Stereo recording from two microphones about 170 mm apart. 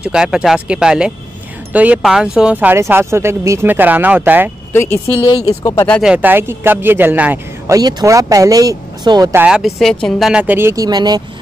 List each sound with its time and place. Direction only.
0.0 s speech: 5° right (ahead or behind)
4.7 s speech: 10° left (ahead or behind)
6.0 s speech: 10° right (ahead or behind)
9.3 s speech: 10° right (ahead or behind); by 11.2 s 25° right (ahead or behind)